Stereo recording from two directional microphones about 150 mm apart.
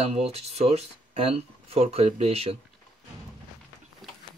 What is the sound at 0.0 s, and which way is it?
Speech, 45° right (ahead or behind).